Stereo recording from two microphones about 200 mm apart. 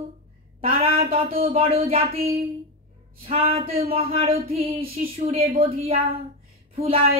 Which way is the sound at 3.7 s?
45° right (ahead or behind).